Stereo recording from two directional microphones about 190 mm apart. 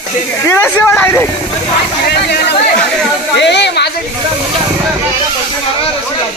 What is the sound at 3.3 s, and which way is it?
Speech, 65° left (ahead or behind).